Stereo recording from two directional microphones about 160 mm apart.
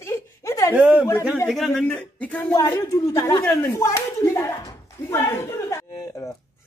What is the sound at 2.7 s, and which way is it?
Speech, 20° left (ahead or behind).